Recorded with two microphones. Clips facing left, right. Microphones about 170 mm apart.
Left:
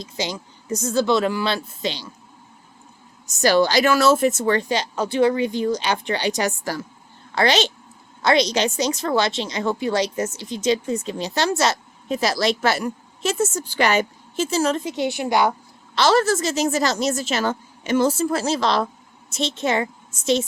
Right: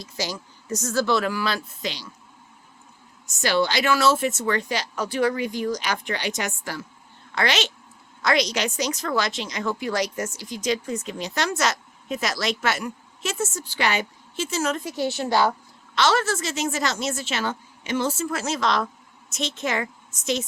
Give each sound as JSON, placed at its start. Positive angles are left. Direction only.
{"t": 0.0, "sound": "a woman's voice", "side_deg": 20}
{"t": 3.2, "sound": "a woman's voice", "side_deg": 40}
{"t": 14.8, "sound": "a woman's voice", "side_deg": 20}
{"t": 16.0, "sound": "a woman's voice", "side_deg": 35}